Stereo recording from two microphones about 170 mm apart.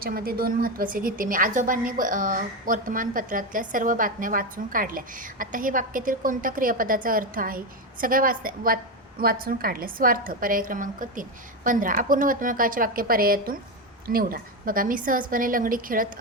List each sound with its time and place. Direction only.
0.0 s a woman's voice: 60° right (ahead or behind)